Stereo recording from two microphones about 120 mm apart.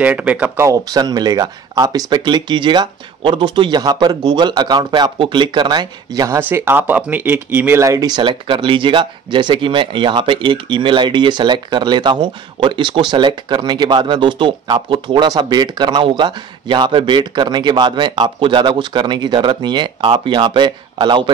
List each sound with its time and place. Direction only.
0.0 s speech: 10° right (ahead or behind)
0.7 s speech: 35° right (ahead or behind)